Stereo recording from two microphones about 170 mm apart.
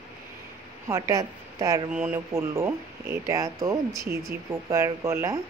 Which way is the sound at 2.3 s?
15° right (ahead or behind).